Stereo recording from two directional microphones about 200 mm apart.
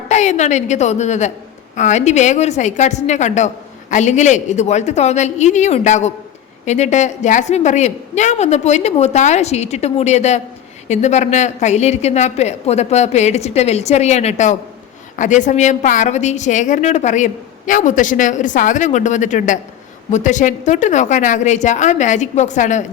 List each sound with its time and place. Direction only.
0.1 s a woman's voice: 35° left (ahead or behind)